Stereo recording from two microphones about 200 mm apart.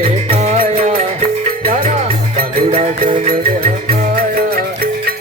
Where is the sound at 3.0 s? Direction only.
45° right (ahead or behind).